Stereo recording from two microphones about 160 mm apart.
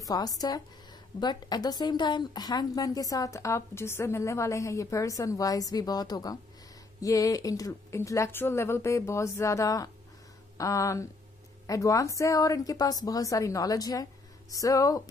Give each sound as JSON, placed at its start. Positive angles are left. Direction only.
{"t": 0.0, "sound": "a woman's voice", "side_deg": 25}